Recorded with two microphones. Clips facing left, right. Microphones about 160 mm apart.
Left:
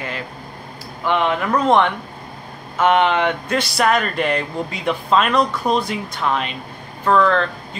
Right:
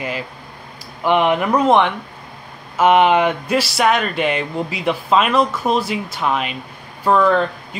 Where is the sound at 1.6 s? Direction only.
Centre (ahead or behind).